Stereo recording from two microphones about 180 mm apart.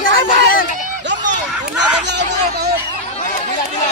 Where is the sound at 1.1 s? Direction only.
85° right.